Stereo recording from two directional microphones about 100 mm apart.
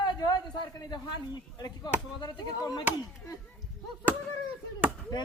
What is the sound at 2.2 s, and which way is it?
Speech, 45° left (ahead or behind).